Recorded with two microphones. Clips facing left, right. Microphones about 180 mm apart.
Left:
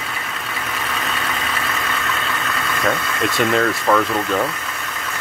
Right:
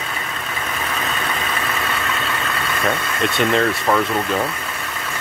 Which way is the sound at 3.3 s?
Centre (ahead or behind).